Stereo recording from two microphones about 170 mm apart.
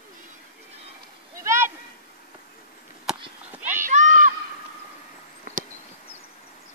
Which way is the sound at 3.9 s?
50° right (ahead or behind).